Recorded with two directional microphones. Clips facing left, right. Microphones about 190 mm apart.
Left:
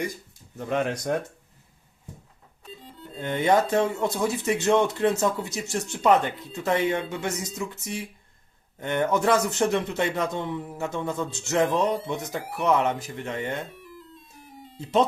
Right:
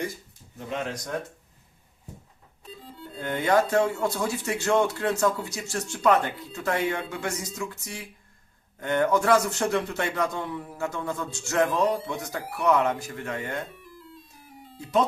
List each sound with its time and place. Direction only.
0.7 s speech: 55° left (ahead or behind)
3.2 s speech: 20° left (ahead or behind)
14.8 s speech: 25° left (ahead or behind)